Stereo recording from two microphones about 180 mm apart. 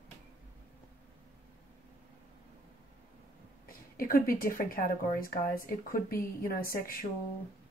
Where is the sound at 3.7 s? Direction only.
55° left (ahead or behind).